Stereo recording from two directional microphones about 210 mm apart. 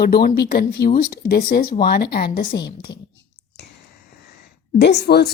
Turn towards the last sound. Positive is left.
turn(degrees=50)  # may be behind; listen again after turning